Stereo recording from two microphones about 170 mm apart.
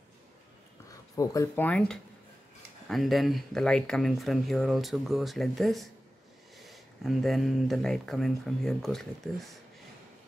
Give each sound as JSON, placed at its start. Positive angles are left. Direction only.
{"t": 1.1, "sound": "speech", "side_deg": 20}
{"t": 1.5, "sound": "speech", "side_deg": 10}